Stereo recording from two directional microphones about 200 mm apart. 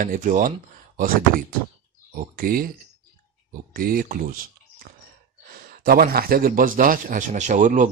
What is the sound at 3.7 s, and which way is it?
Speech, 45° right (ahead or behind).